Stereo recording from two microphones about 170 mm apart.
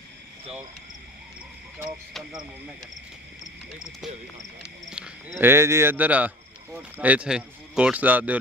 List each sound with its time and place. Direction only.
4.8 s speech: 5° right (ahead or behind)